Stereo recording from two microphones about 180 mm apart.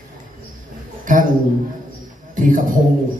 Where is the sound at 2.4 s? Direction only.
50° right (ahead or behind).